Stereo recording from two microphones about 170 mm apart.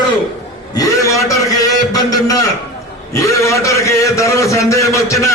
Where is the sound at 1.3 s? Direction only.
20° left (ahead or behind).